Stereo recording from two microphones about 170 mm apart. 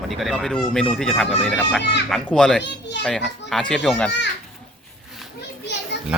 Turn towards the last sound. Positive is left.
turn(degrees=90)